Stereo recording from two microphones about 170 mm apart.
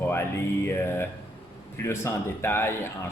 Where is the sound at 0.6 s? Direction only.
15° left (ahead or behind).